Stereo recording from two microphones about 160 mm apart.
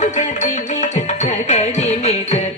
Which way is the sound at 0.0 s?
50° left (ahead or behind).